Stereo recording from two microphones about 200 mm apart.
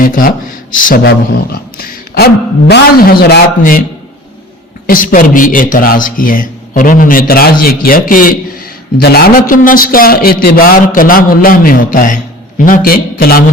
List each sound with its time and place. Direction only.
0.0 s a man's voice: 45° left (ahead or behind)
4.9 s a man's voice: 45° left (ahead or behind)